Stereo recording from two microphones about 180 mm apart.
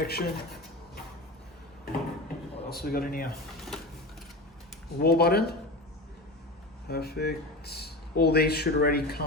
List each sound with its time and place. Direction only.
0.0 s speech: 60° left (ahead or behind)
2.6 s speech: 60° left (ahead or behind)
4.9 s speech: 60° left (ahead or behind)
6.8 s speech: 60° left (ahead or behind)